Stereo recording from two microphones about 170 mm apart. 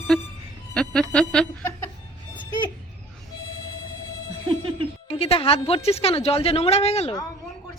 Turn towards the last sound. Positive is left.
turn(degrees=35)  # may be behind; listen again after turning